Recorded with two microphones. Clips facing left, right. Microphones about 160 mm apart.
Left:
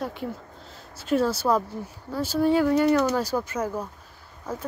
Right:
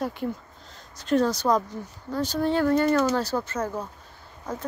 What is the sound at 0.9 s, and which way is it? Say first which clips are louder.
Speech: right 1 dB; 5° left (ahead or behind).